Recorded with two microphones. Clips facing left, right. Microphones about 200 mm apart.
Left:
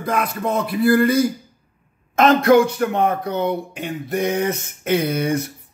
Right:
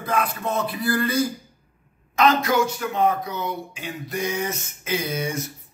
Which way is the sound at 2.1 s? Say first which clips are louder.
Left 6 dB; 55° left (ahead or behind).